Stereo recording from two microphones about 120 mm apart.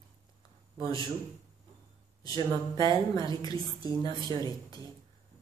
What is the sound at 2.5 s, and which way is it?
Speech, 35° right (ahead or behind).